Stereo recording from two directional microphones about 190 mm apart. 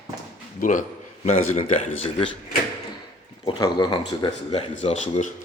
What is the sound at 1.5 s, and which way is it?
Speech, 35° left (ahead or behind).